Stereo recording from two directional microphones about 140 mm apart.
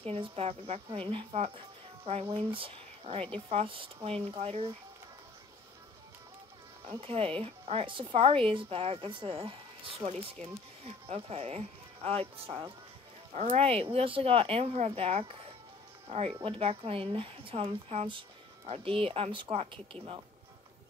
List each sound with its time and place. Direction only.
0.0 s speech: 45° right (ahead or behind)
6.9 s a woman's voice: 40° right (ahead or behind)
13.3 s a woman's voice: 50° right (ahead or behind)